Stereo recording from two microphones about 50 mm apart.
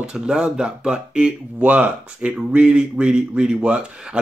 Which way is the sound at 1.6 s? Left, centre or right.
Right.